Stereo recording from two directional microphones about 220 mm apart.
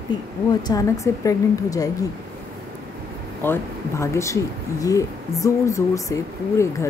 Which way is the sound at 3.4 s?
10° left (ahead or behind).